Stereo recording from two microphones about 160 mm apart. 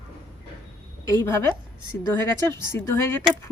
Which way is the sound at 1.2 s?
15° left (ahead or behind).